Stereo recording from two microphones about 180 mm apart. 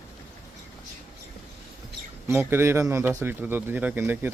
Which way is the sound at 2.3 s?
10° right (ahead or behind).